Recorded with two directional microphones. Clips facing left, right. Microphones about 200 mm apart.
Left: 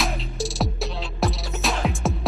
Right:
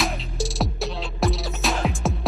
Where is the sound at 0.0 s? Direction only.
Centre (ahead or behind).